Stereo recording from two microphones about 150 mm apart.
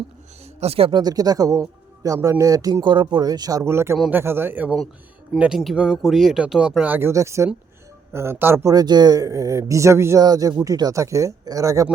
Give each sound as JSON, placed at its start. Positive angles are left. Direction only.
{"t": 0.6, "sound": "speech", "side_deg": -40}